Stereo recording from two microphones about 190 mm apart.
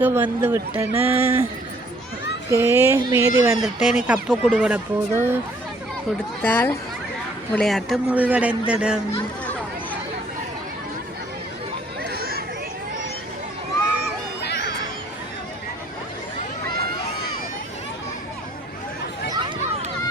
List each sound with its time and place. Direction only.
0.0 s a man's voice: 10° right (ahead or behind)
2.5 s a man's voice: 15° right (ahead or behind)
6.4 s a man's voice: 10° left (ahead or behind); by 9.0 s 5° right (ahead or behind)
12.0 s a sound: 55° right (ahead or behind)